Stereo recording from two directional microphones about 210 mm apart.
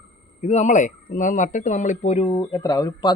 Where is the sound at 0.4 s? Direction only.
35° left (ahead or behind).